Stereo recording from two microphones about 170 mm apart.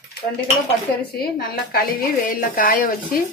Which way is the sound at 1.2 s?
60° left (ahead or behind).